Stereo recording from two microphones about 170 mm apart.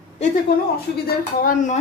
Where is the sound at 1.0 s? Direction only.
55° left (ahead or behind).